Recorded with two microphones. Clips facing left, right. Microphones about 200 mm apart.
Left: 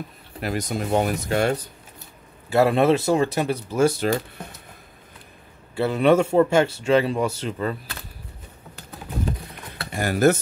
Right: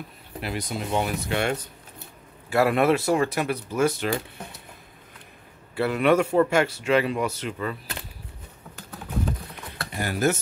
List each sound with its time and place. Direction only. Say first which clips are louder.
0.4 s speech: left 4 dB; 45° left (ahead or behind)
5.8 s speech: left 3 dB; 25° left (ahead or behind)
9.9 s speech: left 6 dB; 45° left (ahead or behind)